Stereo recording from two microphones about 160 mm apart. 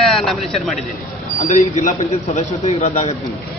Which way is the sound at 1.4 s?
55° left (ahead or behind).